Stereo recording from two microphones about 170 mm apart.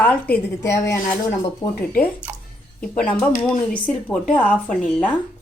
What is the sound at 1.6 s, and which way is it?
Speech, 35° left (ahead or behind).